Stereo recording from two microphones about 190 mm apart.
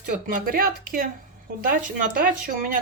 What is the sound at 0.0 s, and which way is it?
Speech, 50° right (ahead or behind).